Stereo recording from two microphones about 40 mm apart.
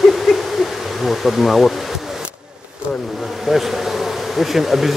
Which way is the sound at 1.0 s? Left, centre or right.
Centre.